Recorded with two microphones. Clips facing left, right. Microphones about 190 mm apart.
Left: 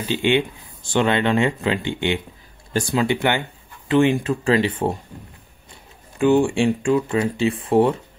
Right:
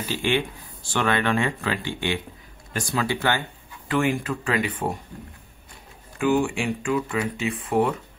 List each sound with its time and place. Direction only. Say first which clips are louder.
0.1 s speech: left 5 dB; 20° left (ahead or behind)
6.1 s speech: left 5 dB; 30° left (ahead or behind)